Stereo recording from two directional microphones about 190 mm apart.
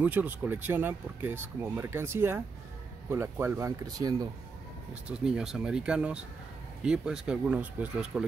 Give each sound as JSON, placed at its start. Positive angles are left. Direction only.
{"t": 0.0, "sound": "speech", "side_deg": -10}
{"t": 5.0, "sound": "speech", "side_deg": -5}